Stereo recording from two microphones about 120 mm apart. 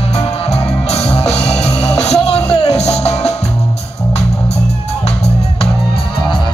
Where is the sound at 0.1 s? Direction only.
60° left (ahead or behind).